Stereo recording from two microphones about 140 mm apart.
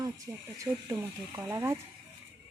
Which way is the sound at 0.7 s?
10° right (ahead or behind).